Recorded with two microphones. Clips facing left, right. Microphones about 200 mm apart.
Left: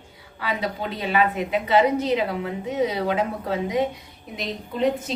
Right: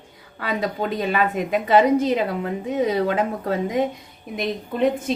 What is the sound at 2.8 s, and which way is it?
Speech, 50° right (ahead or behind).